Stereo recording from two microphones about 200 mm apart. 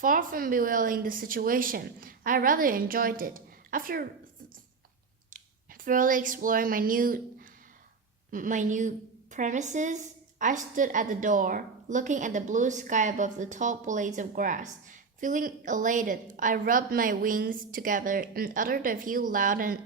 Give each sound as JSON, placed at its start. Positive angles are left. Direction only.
{"t": 0.0, "sound": "a woman's voice", "side_deg": -45}
{"t": 5.8, "sound": "a woman's voice", "side_deg": -40}
{"t": 8.3, "sound": "a woman's voice", "side_deg": -40}